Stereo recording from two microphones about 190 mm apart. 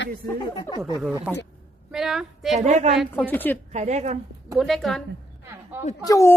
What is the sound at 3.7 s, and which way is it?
Speech, 35° right (ahead or behind).